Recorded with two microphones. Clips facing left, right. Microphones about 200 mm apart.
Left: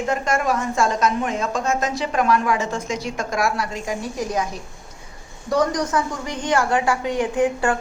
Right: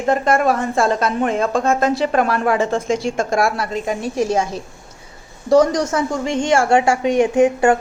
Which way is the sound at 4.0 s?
25° right (ahead or behind).